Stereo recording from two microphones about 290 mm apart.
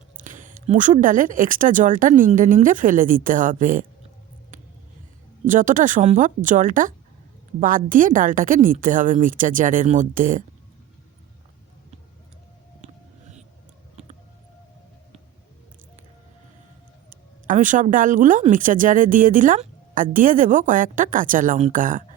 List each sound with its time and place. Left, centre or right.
0.2 s speech: right
5.5 s speech: right
12.8 s a sound: right
17.1 s speech: right